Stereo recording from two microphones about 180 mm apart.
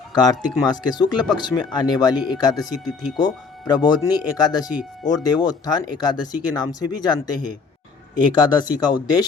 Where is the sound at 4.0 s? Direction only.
20° left (ahead or behind).